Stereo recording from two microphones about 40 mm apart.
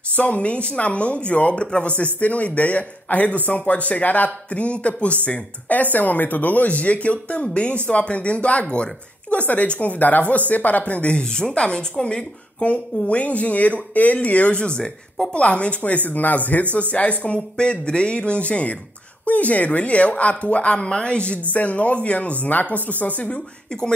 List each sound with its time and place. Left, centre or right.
0.1 s speech: left
11.1 s speech: left
13.1 s speech: left
17.2 s speech: left
21.5 s speech: left